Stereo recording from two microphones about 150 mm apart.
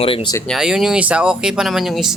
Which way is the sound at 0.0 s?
40° left (ahead or behind).